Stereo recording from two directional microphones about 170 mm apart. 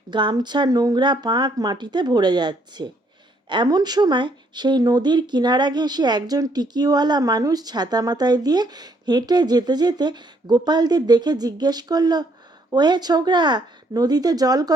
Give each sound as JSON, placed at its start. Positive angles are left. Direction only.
{"t": 0.1, "sound": "speech", "side_deg": -25}